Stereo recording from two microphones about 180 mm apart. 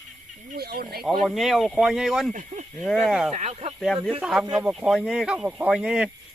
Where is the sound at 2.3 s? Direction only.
45° right (ahead or behind).